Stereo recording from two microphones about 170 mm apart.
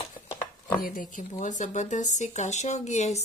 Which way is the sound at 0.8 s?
55° left (ahead or behind).